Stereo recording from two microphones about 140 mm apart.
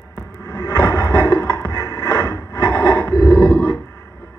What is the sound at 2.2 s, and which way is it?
Wood, 20° left (ahead or behind).